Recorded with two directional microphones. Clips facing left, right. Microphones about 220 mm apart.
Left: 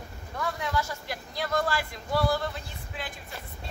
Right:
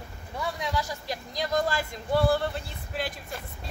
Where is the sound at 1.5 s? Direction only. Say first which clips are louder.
Right 1 dB; 20° right (ahead or behind).